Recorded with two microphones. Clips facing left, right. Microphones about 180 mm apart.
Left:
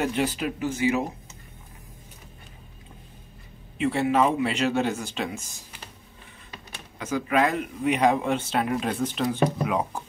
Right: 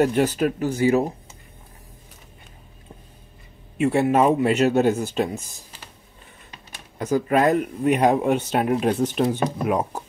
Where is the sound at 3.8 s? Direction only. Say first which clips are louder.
Right 4 dB; 50° right (ahead or behind).